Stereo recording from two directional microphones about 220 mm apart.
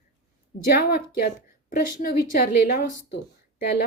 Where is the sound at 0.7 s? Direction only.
45° left (ahead or behind).